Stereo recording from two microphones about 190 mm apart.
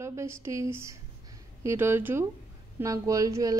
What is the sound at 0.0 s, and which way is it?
Speech, 15° right (ahead or behind).